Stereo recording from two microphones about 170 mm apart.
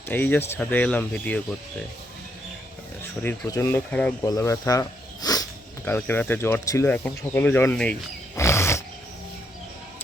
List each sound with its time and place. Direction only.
0.1 s speech: 10° left (ahead or behind)
3.2 s speech: 15° left (ahead or behind)
8.4 s roaring cats: 15° left (ahead or behind)